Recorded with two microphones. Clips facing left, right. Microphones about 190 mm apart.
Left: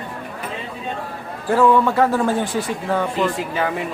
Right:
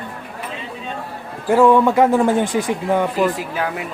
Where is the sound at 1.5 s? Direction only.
15° right (ahead or behind).